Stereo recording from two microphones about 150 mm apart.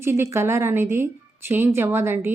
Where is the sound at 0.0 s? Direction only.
15° right (ahead or behind).